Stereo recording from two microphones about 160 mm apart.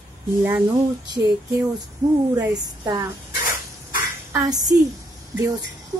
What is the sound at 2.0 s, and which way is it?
Speech, 25° right (ahead or behind).